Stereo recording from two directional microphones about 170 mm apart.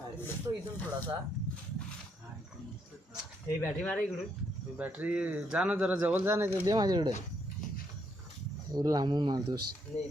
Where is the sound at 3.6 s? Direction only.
10° left (ahead or behind).